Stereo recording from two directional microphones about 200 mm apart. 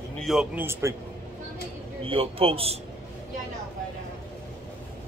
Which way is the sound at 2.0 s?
25° right (ahead or behind).